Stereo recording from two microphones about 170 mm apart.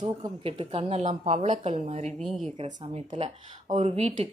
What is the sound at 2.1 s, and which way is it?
Speech, centre (ahead or behind).